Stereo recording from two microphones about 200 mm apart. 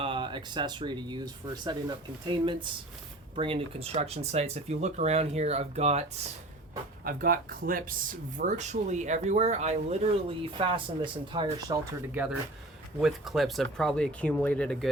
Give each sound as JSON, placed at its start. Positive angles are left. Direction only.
{"t": 0.0, "sound": "speech", "side_deg": -25}
{"t": 7.0, "sound": "speech", "side_deg": -45}